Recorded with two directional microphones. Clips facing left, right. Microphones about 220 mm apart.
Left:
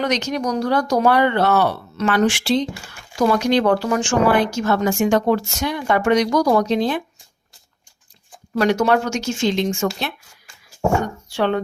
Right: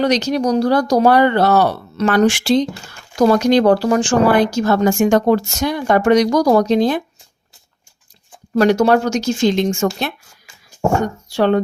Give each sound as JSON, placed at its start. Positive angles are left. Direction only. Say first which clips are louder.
{"t": 0.0, "sound": "speech", "louder": "right 5 dB", "side_deg": -35}
{"t": 8.5, "sound": "speech", "louder": "right 4 dB", "side_deg": -40}
{"t": 11.3, "sound": "speech", "louder": "right 5 dB", "side_deg": -40}